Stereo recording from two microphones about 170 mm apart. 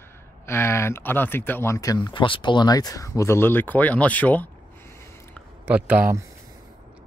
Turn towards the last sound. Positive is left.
turn(degrees=-10)  # may be behind; listen again after turning